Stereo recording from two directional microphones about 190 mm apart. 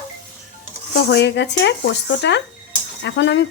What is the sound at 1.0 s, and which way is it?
Speech, 65° left (ahead or behind).